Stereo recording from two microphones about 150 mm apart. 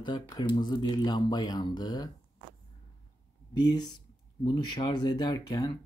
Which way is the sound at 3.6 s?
25° left (ahead or behind).